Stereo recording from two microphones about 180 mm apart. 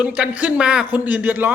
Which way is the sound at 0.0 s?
5° right (ahead or behind).